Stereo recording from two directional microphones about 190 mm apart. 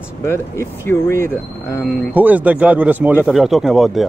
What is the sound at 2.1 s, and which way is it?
Speech, 10° right (ahead or behind).